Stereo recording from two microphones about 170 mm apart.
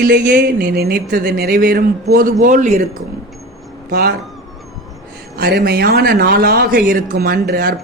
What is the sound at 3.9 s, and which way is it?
Speech, 65° right (ahead or behind).